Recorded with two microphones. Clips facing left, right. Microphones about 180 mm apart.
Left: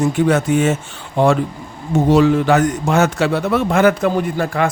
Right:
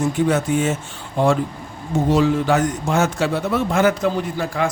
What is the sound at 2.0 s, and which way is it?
A man's voice, 70° left (ahead or behind).